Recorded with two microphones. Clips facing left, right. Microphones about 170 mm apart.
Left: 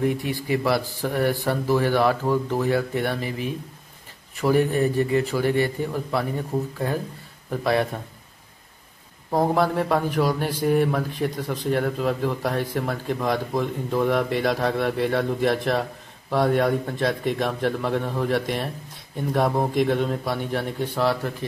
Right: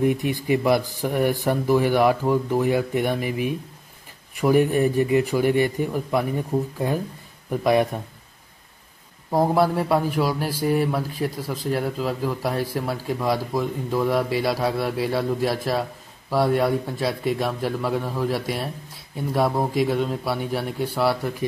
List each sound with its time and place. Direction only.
0.0 s speech: 20° right (ahead or behind)
9.3 s a man's voice: 10° right (ahead or behind)